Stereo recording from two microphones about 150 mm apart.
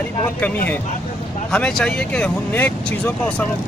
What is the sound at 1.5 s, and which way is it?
Speech, 5° left (ahead or behind).